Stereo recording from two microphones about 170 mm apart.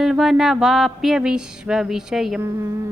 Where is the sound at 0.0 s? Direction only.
Centre (ahead or behind).